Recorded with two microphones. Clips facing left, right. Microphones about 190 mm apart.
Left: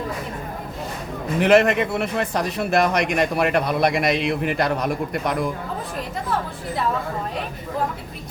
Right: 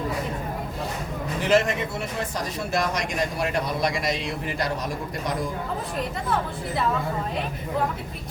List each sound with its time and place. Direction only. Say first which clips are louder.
1.4 s a man's voice: left 6 dB; 60° left (ahead or behind)